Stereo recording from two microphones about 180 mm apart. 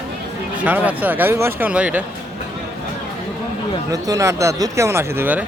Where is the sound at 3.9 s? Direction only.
20° right (ahead or behind).